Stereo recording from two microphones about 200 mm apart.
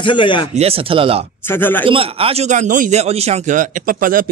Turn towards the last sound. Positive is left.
turn(degrees=-45)  # may be behind; listen again after turning